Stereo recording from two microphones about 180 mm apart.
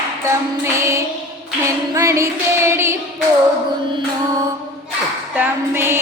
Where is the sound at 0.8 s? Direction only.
15° right (ahead or behind).